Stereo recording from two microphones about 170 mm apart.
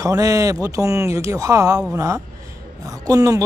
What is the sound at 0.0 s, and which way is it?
Speech, 20° right (ahead or behind).